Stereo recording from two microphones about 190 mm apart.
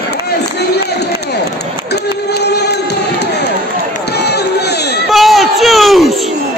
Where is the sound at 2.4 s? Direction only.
60° left (ahead or behind).